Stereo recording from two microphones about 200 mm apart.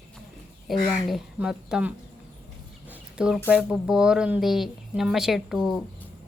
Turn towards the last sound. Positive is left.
turn(degrees=0)  # may be behind; listen again after turning